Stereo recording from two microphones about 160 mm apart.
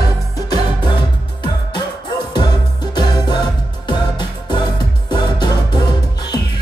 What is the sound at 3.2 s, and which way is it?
Music, 25° left (ahead or behind).